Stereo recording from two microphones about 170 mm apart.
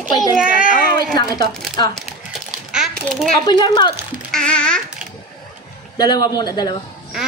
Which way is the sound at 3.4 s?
25° left (ahead or behind).